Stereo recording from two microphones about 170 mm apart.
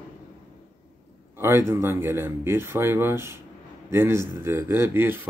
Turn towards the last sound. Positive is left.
turn(degrees=-10)  # may be behind; listen again after turning